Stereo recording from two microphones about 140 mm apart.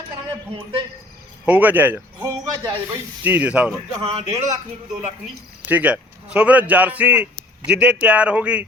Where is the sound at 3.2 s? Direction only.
10° right (ahead or behind).